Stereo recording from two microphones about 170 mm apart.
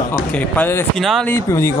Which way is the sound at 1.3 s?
15° left (ahead or behind).